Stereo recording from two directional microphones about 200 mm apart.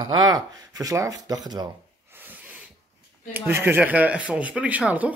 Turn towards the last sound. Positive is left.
turn(degrees=-10)  # may be behind; listen again after turning